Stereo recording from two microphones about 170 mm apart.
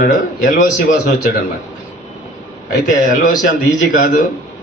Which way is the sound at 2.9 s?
50° left (ahead or behind).